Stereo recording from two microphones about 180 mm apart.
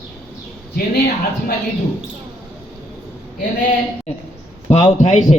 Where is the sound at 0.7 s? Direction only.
55° left (ahead or behind).